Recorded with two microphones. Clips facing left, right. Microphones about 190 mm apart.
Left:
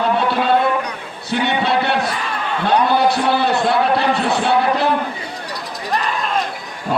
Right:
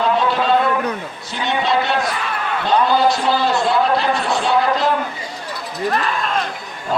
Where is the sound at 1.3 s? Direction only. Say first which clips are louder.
Left 2 dB; 60° left (ahead or behind).